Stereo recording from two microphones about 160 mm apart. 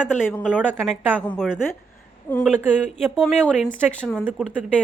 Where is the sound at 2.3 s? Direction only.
10° left (ahead or behind).